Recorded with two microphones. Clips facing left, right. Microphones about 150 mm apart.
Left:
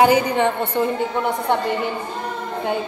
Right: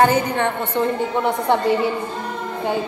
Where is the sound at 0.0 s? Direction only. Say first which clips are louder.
Left 1 dB; 10° left (ahead or behind).